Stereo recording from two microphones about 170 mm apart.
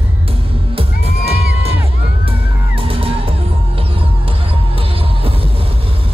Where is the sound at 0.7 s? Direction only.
35° right (ahead or behind).